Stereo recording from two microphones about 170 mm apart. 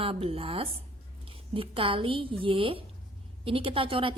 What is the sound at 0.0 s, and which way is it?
A woman's voice, 35° right (ahead or behind).